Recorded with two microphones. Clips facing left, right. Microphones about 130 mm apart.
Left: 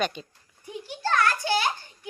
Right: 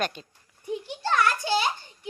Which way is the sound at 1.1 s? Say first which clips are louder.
Even; 20° right (ahead or behind).